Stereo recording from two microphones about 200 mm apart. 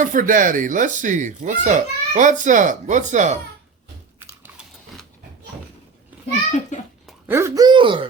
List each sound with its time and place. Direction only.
0.0 s speech: 40° right (ahead or behind)
6.7 s a child's voice: 40° left (ahead or behind)
7.1 s speech: 10° right (ahead or behind)